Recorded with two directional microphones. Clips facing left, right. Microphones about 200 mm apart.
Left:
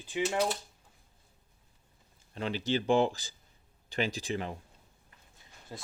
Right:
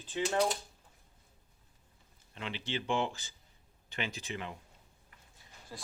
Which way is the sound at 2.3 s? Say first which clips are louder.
Left 7 dB; 40° left (ahead or behind).